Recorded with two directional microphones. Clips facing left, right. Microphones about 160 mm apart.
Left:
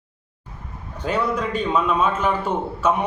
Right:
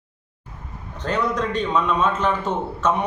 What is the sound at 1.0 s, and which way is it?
A man's voice, 10° left (ahead or behind).